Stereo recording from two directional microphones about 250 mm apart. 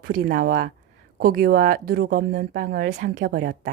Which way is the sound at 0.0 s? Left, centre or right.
Right.